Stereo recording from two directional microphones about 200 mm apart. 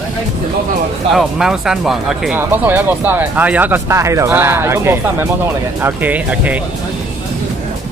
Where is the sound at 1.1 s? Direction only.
Centre (ahead or behind).